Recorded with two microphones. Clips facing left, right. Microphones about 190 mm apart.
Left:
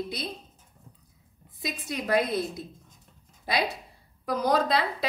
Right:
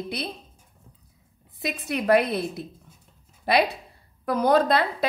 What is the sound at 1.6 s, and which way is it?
A woman's voice, 60° right (ahead or behind).